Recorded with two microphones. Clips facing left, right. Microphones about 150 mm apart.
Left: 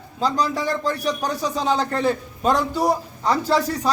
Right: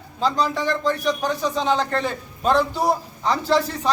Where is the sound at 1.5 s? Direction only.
35° left (ahead or behind).